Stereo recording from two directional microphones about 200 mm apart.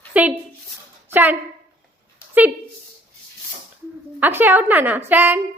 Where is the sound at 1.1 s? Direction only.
10° right (ahead or behind).